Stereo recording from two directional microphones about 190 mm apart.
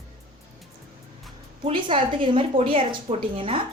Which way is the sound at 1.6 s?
25° right (ahead or behind).